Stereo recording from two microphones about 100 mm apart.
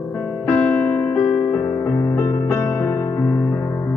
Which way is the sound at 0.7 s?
30° left (ahead or behind).